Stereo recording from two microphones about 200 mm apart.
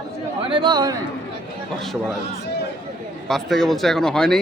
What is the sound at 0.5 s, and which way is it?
Speech, 20° right (ahead or behind).